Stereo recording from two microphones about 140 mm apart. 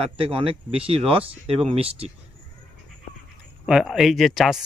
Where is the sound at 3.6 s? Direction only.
Centre (ahead or behind).